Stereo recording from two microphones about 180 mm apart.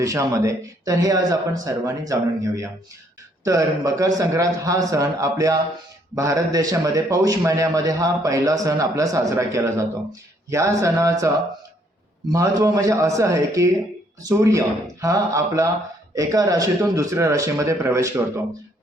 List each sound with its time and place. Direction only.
0.0 s a man's voice: 20° right (ahead or behind)
12.3 s a man's voice: 20° right (ahead or behind)